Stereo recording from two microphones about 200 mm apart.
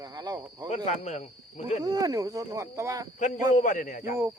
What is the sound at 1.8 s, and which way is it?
Speech, 20° right (ahead or behind).